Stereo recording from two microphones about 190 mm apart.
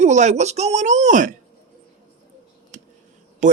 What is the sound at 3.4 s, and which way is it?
Speech, 40° right (ahead or behind).